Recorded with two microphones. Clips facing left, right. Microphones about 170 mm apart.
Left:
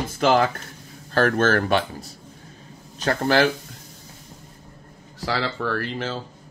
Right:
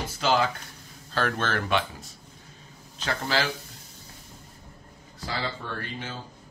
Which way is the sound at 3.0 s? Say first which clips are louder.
Left 8 dB; 50° left (ahead or behind).